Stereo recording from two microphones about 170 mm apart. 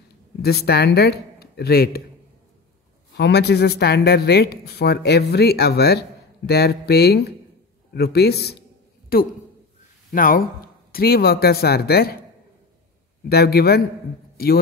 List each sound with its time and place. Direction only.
0.4 s speech: 70° left (ahead or behind)
3.2 s speech: 80° left; by 12.2 s 65° left (ahead or behind)
13.3 s speech: 70° left (ahead or behind)
14.3 s a sound: 65° left (ahead or behind)